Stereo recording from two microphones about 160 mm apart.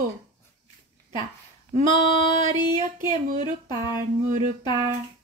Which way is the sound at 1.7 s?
50° right (ahead or behind).